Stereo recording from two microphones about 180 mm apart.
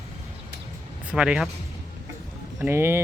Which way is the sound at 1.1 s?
5° right (ahead or behind).